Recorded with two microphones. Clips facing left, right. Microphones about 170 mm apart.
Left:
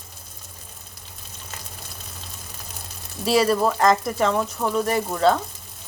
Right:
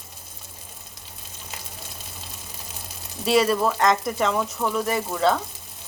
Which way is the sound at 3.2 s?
Centre (ahead or behind).